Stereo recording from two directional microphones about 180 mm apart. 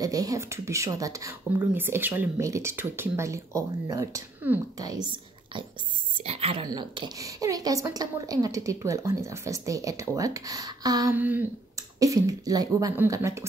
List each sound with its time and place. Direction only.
0.0 s a woman's voice: 20° right (ahead or behind)